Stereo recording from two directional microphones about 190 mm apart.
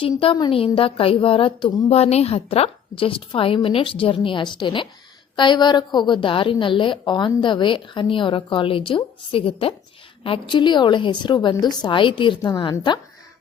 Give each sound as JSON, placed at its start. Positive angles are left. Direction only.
{"t": 0.2, "sound": "a woman's voice", "side_deg": 25}